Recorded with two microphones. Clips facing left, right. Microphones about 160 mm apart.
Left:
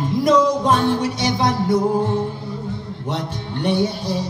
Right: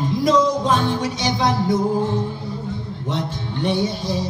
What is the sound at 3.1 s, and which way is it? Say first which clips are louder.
Music: even; 60° left (ahead or behind).